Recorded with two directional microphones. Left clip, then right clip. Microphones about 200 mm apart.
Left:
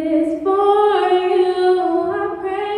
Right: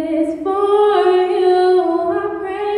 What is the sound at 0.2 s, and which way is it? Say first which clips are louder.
Female singing: right 1 dB; 10° right (ahead or behind).